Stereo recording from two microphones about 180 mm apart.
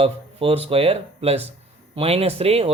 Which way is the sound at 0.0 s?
35° right (ahead or behind).